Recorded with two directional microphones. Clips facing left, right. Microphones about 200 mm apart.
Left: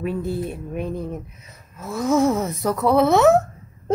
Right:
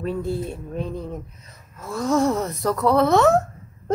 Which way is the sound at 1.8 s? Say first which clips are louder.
Left 2 dB; 5° left (ahead or behind).